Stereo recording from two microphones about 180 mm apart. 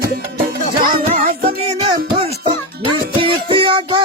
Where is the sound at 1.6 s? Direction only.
30° right (ahead or behind).